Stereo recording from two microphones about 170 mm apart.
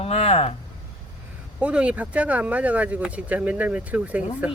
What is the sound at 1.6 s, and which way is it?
Speech, 5° right (ahead or behind).